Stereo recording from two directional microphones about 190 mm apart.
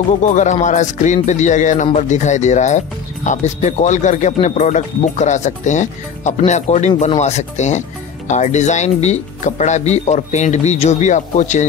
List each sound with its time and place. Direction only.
0.3 s speech: 40° left (ahead or behind)